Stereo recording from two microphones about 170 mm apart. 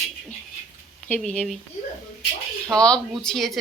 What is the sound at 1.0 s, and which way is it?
Speech, 5° left (ahead or behind).